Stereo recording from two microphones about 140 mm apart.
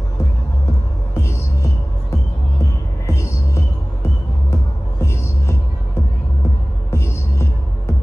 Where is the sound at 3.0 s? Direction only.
20° left (ahead or behind).